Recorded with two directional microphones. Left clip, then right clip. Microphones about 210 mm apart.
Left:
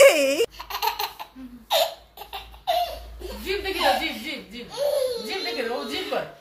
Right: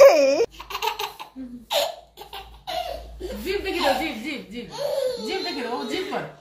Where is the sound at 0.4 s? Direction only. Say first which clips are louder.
Right 1 dB; 20° left (ahead or behind).